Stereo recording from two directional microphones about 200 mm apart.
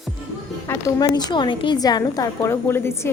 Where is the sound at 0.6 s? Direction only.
20° left (ahead or behind).